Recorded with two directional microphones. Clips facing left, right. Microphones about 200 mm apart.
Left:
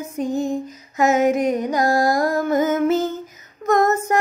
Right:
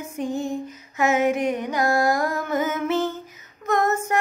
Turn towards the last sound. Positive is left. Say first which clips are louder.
# left 4 dB
turn(degrees=40)  # may be behind; listen again after turning